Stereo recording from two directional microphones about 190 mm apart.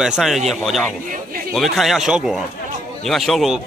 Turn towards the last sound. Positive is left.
turn(degrees=0)  # may be behind; listen again after turning